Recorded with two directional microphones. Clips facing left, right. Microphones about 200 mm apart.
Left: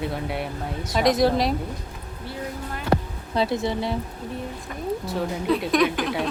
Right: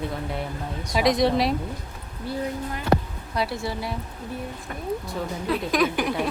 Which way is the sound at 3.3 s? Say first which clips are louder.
Left 4 dB; 20° left (ahead or behind).